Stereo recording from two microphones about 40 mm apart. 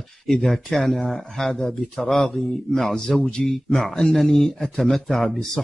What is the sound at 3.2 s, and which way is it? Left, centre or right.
Speech, left.